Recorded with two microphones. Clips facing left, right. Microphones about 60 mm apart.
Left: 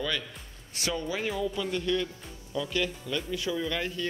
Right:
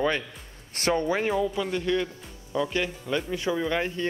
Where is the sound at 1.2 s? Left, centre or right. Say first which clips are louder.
Right 5 dB; right.